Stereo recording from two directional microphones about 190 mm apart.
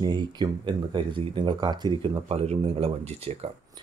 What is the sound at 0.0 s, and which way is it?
Speech, 20° right (ahead or behind).